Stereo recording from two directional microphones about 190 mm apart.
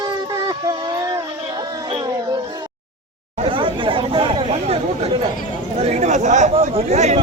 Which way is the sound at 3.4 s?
30° right (ahead or behind).